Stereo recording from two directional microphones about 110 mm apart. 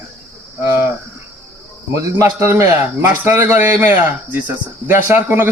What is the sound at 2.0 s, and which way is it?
A man's voice, 30° right (ahead or behind).